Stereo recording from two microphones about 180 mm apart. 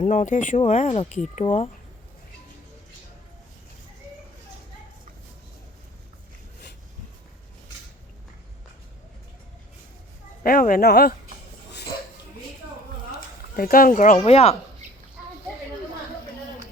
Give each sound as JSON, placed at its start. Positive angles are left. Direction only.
{"t": 0.0, "sound": "speech", "side_deg": 45}
{"t": 10.4, "sound": "speech", "side_deg": 50}
{"t": 13.1, "sound": "a sound", "side_deg": 55}
{"t": 14.3, "sound": "speech", "side_deg": 35}